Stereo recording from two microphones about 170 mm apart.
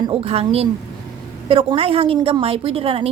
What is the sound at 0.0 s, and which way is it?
A woman's voice, 35° right (ahead or behind).